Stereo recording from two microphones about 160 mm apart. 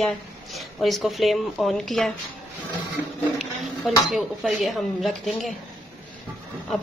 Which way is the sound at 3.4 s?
Centre (ahead or behind).